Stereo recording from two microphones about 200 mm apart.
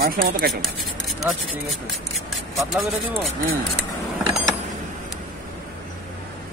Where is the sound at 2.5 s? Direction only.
Centre (ahead or behind).